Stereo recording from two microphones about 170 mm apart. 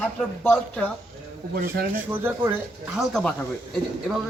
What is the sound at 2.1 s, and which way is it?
Speech, 10° right (ahead or behind).